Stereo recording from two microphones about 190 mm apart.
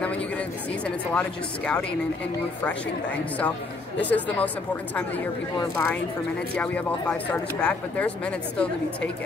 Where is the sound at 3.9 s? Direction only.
10° left (ahead or behind).